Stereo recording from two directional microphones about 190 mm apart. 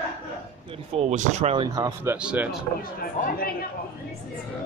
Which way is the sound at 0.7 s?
35° right (ahead or behind).